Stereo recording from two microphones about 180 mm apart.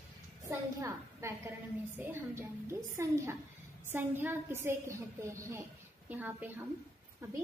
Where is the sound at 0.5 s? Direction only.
15° right (ahead or behind).